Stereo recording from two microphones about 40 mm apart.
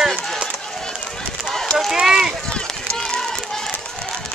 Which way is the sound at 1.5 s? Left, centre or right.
Centre.